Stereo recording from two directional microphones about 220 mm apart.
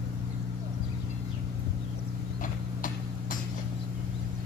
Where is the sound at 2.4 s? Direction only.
40° left (ahead or behind).